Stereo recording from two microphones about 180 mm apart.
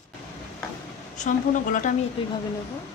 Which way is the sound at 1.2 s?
45° left (ahead or behind).